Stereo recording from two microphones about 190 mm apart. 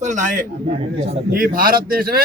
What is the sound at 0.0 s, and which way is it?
A man's voice, 40° right (ahead or behind).